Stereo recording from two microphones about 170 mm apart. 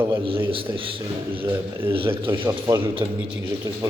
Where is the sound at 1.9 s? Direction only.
30° right (ahead or behind).